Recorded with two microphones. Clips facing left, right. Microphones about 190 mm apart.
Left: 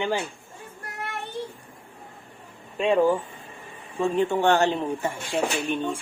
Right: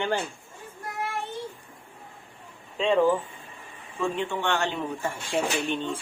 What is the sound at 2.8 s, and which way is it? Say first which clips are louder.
Speech: left 1 dB; 10° left (ahead or behind).